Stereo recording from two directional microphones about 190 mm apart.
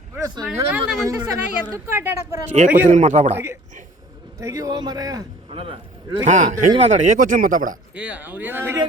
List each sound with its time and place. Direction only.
0.2 s speech: 20° right (ahead or behind)
0.5 s speech: 5° right (ahead or behind)
1.0 s speech: 20° right (ahead or behind)
2.9 s a man's voice: 40° right (ahead or behind)
3.3 s a man's voice: 15° right (ahead or behind)
6.2 s a man's voice: 40° right (ahead or behind)
7.9 s speech: 10° right (ahead or behind)